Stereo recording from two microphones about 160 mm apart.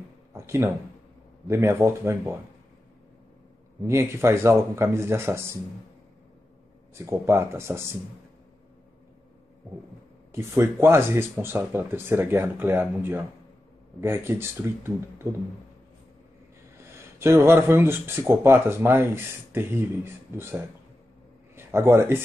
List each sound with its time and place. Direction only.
0.3 s a sound: 15° right (ahead or behind)
1.5 s speech: 15° right (ahead or behind)
3.8 s speech: 15° right (ahead or behind)
7.1 s speech: 15° right (ahead or behind)
10.3 s speech: 15° right (ahead or behind)
17.2 s speech: 15° right (ahead or behind)